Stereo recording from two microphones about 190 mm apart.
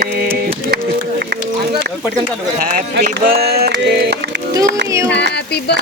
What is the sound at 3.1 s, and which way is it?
Speech, 55° right (ahead or behind).